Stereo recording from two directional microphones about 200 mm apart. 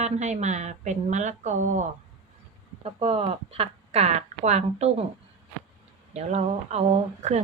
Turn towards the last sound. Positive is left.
turn(degrees=-35)  # may be behind; listen again after turning